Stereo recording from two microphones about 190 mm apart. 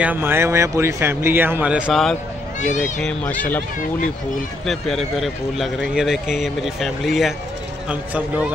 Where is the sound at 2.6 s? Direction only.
40° left (ahead or behind).